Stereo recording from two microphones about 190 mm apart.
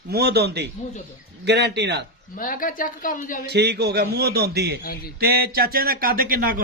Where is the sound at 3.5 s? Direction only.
60° right (ahead or behind).